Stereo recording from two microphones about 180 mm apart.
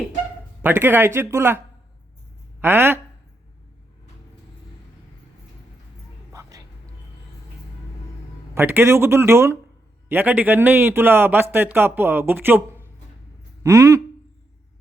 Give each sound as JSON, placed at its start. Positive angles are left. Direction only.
{"t": 0.6, "sound": "a man's voice", "side_deg": -10}
{"t": 6.3, "sound": "vehicle", "side_deg": -20}
{"t": 8.5, "sound": "a man's voice", "side_deg": -15}